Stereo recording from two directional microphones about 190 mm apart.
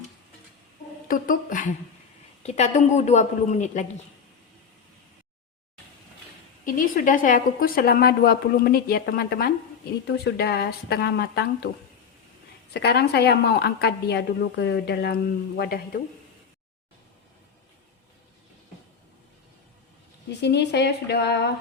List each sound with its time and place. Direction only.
1.0 s a woman's voice: 45° left (ahead or behind)
6.7 s a woman's voice: 45° left (ahead or behind)
12.7 s a woman's voice: 60° left (ahead or behind)
20.3 s a woman's voice: 65° left (ahead or behind)